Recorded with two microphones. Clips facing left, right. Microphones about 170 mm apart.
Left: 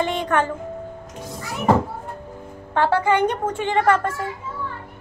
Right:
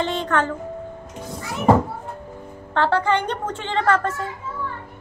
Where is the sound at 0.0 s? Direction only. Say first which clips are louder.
Left 1 dB; 10° left (ahead or behind).